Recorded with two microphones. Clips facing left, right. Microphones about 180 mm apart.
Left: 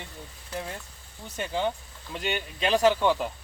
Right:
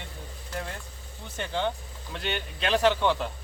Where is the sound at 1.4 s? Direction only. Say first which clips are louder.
Left 1 dB; 10° left (ahead or behind).